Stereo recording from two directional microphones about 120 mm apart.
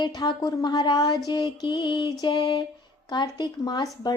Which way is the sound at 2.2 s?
45° left (ahead or behind).